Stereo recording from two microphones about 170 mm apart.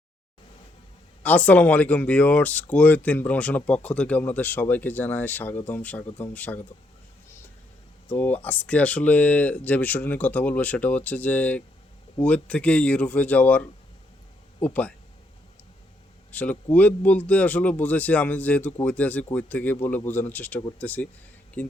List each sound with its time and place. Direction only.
1.2 s speech: 10° left (ahead or behind)
8.0 s speech: 10° left (ahead or behind)
16.3 s speech: 10° left (ahead or behind)